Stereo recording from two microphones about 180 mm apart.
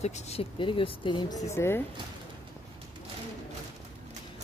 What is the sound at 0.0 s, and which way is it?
Speech, 35° left (ahead or behind).